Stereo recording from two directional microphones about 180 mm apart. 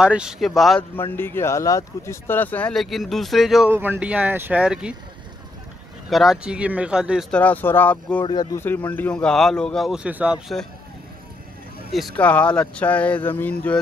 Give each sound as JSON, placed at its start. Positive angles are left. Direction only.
{"t": 0.0, "sound": "speech", "side_deg": -5}
{"t": 0.9, "sound": "speech", "side_deg": 10}
{"t": 6.0, "sound": "speech", "side_deg": 0}
{"t": 8.2, "sound": "speech", "side_deg": 25}
{"t": 8.5, "sound": "speech", "side_deg": 10}
{"t": 12.2, "sound": "speech", "side_deg": 10}